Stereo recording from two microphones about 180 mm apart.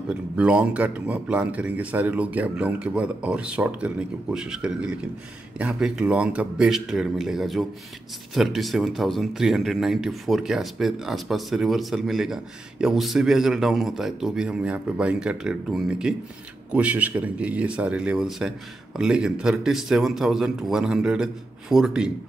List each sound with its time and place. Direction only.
0.4 s speech: 5° right (ahead or behind)